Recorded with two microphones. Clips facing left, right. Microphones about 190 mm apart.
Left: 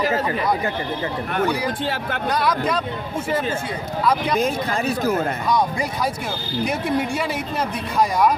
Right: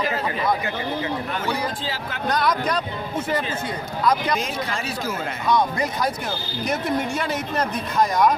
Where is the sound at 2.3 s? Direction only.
5° left (ahead or behind).